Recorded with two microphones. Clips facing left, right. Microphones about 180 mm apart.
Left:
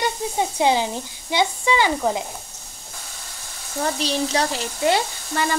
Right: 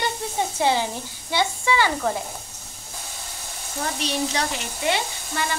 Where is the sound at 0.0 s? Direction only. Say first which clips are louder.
Left 3 dB; 15° left (ahead or behind).